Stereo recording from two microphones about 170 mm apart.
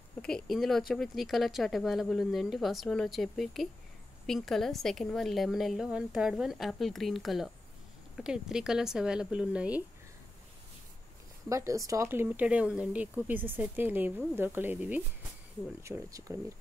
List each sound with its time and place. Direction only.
0.2 s speech: centre (ahead or behind)
11.4 s speech: 20° right (ahead or behind)